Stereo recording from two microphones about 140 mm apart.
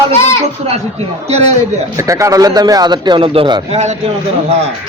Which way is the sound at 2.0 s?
20° right (ahead or behind).